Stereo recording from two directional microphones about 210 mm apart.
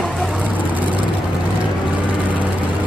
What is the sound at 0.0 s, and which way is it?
Vehicle, centre (ahead or behind).